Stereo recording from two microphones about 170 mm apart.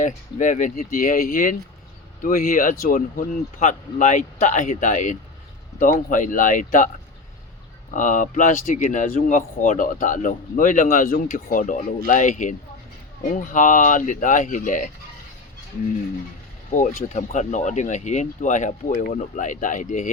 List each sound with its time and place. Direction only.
0.0 s speech: 45° left (ahead or behind)
16.7 s speech: 50° left (ahead or behind)